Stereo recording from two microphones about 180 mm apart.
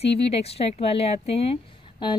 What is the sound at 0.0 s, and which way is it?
Speech, 35° left (ahead or behind).